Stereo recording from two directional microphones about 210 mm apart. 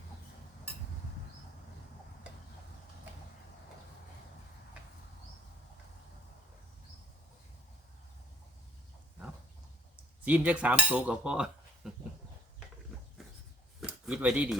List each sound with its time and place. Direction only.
10.2 s cutlery: 5° right (ahead or behind)
13.8 s speech: 5° right (ahead or behind)